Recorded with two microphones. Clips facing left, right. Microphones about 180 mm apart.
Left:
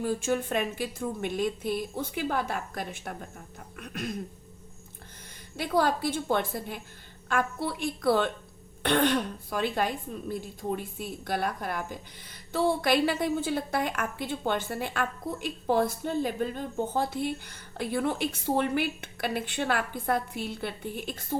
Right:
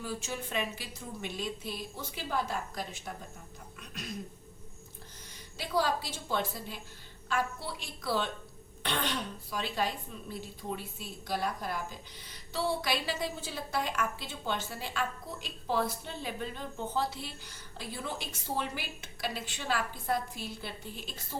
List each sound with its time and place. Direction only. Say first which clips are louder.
0.0 s a woman's voice: left 10 dB; 55° left (ahead or behind)
5.5 s speech: left 5 dB; 55° left (ahead or behind)